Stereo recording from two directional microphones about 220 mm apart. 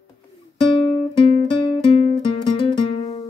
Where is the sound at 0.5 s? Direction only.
20° left (ahead or behind).